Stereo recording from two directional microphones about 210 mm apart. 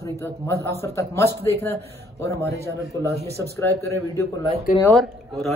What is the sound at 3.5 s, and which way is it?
Speech, 15° left (ahead or behind).